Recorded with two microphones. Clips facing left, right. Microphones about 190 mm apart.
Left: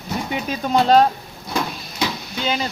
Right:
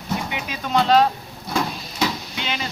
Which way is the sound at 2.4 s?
40° left (ahead or behind).